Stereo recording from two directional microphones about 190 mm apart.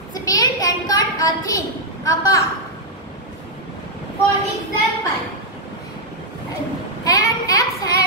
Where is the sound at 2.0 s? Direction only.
15° left (ahead or behind).